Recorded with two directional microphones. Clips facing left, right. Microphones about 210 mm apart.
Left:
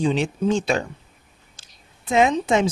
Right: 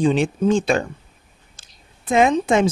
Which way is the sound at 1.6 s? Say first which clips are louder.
Right 2 dB; 50° right (ahead or behind).